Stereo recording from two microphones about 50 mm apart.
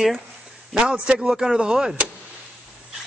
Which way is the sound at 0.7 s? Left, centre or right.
Centre.